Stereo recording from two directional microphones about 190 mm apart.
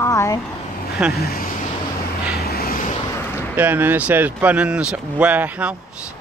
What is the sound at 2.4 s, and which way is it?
Vehicle, 55° left (ahead or behind).